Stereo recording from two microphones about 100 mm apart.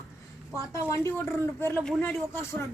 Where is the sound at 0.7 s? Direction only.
30° left (ahead or behind).